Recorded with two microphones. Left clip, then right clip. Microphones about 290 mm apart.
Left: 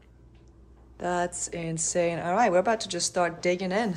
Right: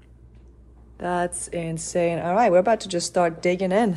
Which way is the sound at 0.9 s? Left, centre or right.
Centre.